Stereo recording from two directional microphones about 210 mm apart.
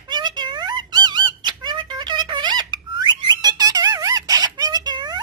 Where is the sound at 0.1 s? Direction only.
20° right (ahead or behind).